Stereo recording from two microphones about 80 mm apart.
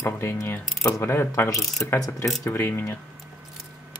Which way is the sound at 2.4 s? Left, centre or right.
Left.